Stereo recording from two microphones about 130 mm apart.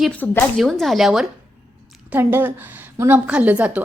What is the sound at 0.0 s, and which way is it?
Speech, 10° left (ahead or behind).